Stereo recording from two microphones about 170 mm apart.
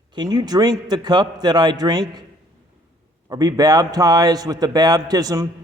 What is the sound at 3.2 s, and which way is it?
A man's voice, 20° right (ahead or behind).